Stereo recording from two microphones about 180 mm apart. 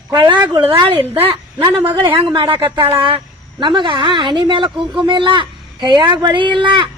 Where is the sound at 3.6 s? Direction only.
25° right (ahead or behind).